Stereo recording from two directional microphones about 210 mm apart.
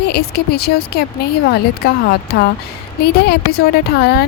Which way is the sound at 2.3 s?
50° left (ahead or behind).